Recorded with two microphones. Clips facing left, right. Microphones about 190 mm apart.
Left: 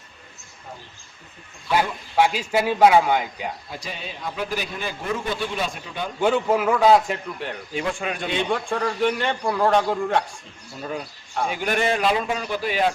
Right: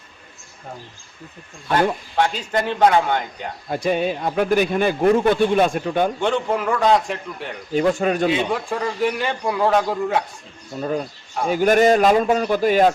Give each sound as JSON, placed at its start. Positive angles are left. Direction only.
{"t": 2.1, "sound": "speech", "side_deg": 10}
{"t": 3.7, "sound": "a man's voice", "side_deg": -55}
{"t": 6.1, "sound": "a man's voice", "side_deg": 5}
{"t": 7.7, "sound": "speech", "side_deg": -40}
{"t": 8.3, "sound": "a man's voice", "side_deg": -5}
{"t": 10.8, "sound": "a man's voice", "side_deg": -40}